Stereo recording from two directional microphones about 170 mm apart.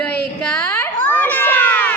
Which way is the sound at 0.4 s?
5° left (ahead or behind).